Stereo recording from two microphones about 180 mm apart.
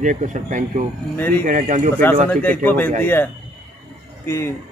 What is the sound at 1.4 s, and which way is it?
Speech, 45° right (ahead or behind).